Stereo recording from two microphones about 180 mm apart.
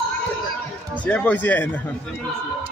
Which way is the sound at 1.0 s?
10° left (ahead or behind).